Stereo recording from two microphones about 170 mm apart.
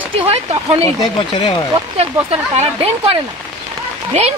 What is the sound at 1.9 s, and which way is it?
Speech, 40° right (ahead or behind).